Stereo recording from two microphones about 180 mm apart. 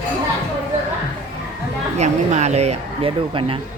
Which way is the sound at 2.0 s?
40° right (ahead or behind).